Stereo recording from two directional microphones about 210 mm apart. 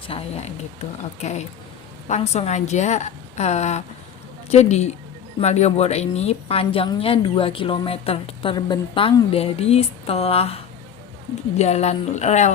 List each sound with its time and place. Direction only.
0.1 s a woman's voice: 30° left (ahead or behind)